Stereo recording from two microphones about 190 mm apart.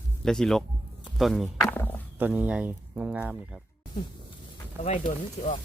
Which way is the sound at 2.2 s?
10° right (ahead or behind).